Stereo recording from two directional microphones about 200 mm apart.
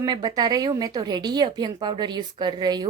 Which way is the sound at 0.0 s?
20° right (ahead or behind).